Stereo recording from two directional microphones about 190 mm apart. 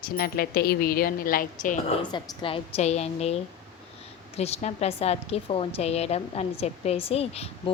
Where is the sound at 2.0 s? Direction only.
25° left (ahead or behind).